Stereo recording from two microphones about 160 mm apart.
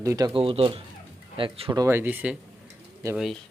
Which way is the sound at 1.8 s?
15° right (ahead or behind).